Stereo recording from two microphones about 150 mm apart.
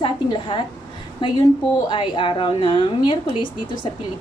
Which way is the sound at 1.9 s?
35° left (ahead or behind).